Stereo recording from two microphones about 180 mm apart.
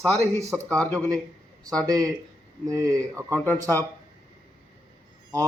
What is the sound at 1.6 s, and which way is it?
Speech, 20° right (ahead or behind).